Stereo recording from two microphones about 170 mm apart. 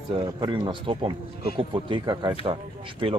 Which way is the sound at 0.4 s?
30° right (ahead or behind).